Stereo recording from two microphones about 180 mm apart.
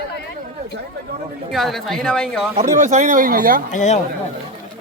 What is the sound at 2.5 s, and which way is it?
Speech, 40° right (ahead or behind).